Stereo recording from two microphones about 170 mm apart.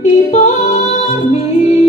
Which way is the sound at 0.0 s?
45° left (ahead or behind).